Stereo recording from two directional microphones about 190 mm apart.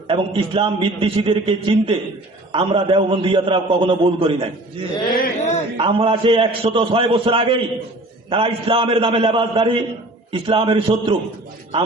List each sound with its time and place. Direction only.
0.1 s a man's voice: 25° right (ahead or behind)
5.2 s a sound: 35° left (ahead or behind)
5.7 s a man's voice: 30° right (ahead or behind)